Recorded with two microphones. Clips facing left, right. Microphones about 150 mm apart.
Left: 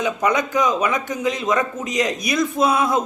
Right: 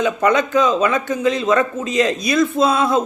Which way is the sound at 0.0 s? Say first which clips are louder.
Right 4 dB; 15° left (ahead or behind).